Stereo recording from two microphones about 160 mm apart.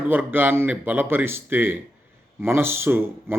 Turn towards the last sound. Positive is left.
turn(degrees=-15)  # may be behind; listen again after turning